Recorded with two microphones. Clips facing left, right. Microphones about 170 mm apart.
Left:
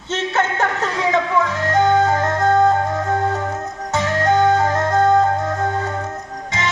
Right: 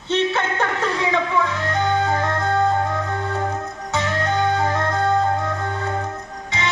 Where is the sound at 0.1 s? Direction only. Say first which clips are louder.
Even; 45° left (ahead or behind).